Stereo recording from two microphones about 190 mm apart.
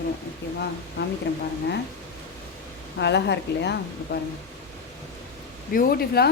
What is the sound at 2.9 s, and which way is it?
Speech, 65° left (ahead or behind).